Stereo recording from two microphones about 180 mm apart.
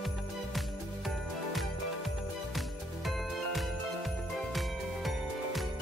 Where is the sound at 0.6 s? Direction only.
Centre (ahead or behind).